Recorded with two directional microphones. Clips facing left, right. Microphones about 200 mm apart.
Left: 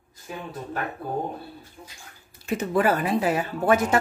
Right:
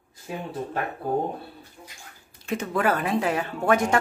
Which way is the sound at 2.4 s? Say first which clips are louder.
Left 2 dB; 5° left (ahead or behind).